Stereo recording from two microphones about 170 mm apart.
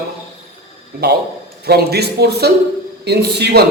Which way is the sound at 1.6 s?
70° right (ahead or behind).